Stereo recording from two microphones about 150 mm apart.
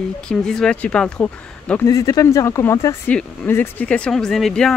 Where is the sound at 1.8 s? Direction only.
20° left (ahead or behind).